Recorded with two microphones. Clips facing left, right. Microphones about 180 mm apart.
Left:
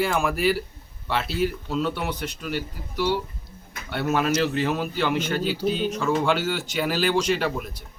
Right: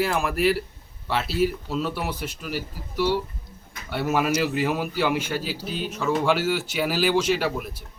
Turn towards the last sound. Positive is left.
turn(degrees=-5)  # may be behind; listen again after turning